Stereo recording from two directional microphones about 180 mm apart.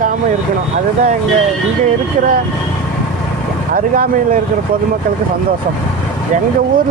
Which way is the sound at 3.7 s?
50° right (ahead or behind).